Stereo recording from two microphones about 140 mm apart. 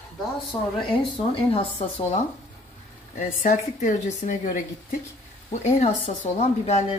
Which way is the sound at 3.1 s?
65° left (ahead or behind).